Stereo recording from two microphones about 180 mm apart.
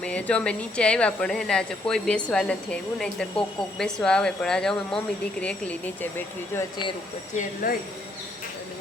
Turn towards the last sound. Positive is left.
turn(degrees=45)  # may be behind; listen again after turning